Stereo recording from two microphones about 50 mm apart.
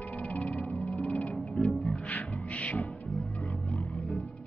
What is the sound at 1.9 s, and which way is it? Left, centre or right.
Music, centre.